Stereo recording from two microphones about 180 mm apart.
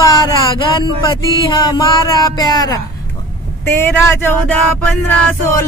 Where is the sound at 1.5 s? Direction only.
20° left (ahead or behind).